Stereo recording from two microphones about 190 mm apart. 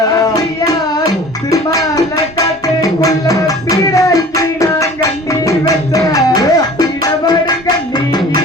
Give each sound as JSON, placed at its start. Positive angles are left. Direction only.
{"t": 0.2, "sound": "music", "side_deg": 20}